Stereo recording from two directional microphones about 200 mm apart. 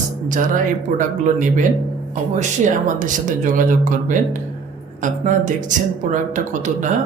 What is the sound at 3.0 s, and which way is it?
Speech, 40° right (ahead or behind).